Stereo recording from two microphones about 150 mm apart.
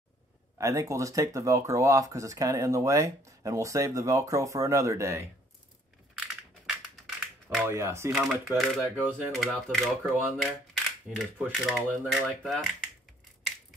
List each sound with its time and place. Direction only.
0.6 s speech: 20° right (ahead or behind)
6.1 s crushing: 5° right (ahead or behind)
7.6 s speech: 20° right (ahead or behind)
8.1 s speech: centre (ahead or behind)